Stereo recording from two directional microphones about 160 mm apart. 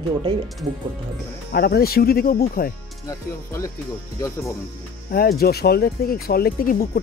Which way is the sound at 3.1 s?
20° left (ahead or behind).